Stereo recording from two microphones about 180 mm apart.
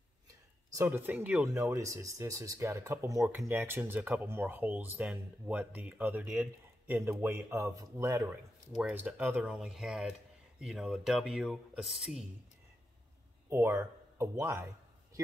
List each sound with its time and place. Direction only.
0.7 s speech: 10° right (ahead or behind)
13.5 s speech: 15° right (ahead or behind)